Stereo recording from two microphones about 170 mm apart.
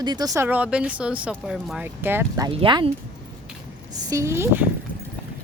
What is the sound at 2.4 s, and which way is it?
Speech, 30° right (ahead or behind).